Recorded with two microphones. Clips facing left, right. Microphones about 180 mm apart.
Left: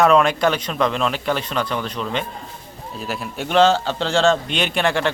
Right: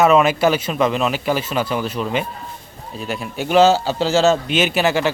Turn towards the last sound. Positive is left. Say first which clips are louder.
# right 3 dB
turn(degrees=-5)  # may be behind; listen again after turning